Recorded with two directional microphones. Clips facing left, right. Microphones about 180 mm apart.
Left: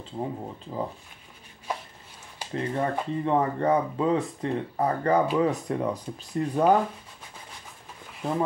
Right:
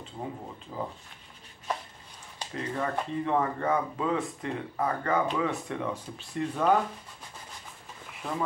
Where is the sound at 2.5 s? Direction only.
30° left (ahead or behind).